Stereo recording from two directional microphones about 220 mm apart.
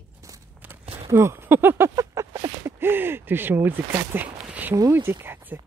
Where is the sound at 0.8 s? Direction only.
25° right (ahead or behind).